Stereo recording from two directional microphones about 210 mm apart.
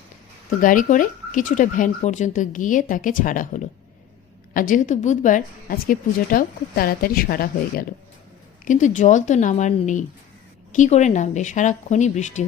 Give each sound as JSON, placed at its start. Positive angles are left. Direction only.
{"t": 0.6, "sound": "a woman's voice", "side_deg": 40}